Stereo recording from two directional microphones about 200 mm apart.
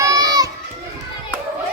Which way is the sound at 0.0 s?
15° right (ahead or behind).